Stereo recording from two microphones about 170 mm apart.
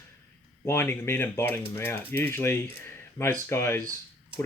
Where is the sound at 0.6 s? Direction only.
15° left (ahead or behind).